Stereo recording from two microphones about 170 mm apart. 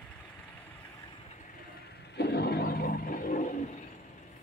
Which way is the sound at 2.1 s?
75° left (ahead or behind).